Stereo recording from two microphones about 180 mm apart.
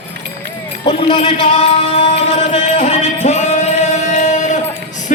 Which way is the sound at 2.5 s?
35° left (ahead or behind).